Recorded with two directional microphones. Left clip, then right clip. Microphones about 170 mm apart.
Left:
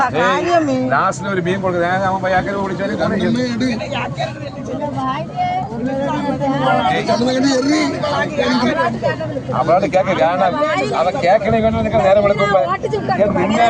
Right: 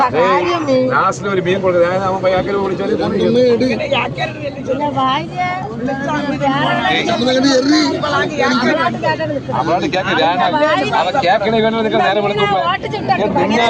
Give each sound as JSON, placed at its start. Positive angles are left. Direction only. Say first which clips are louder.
{"t": 0.2, "sound": "speech", "louder": "right 1 dB", "side_deg": 90}
{"t": 7.2, "sound": "a man's voice", "louder": "right 3 dB", "side_deg": 60}
{"t": 11.0, "sound": "speech", "louder": "even", "side_deg": 90}